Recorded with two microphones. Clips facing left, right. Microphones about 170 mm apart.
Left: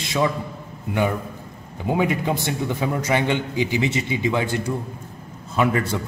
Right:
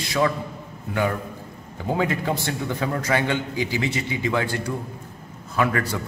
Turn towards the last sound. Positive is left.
turn(degrees=20)  # may be behind; listen again after turning